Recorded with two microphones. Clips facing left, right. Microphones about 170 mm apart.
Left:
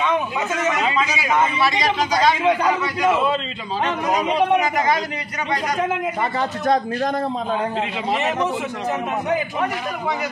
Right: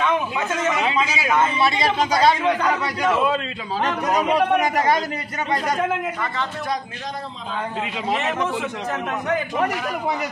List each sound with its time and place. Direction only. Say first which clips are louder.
0.7 s a man's voice: even; 10° right (ahead or behind)
1.6 s speech: even; 30° right (ahead or behind)
2.4 s a man's voice: left 2 dB; 10° left (ahead or behind)
8.1 s a man's voice: left 1 dB; centre (ahead or behind)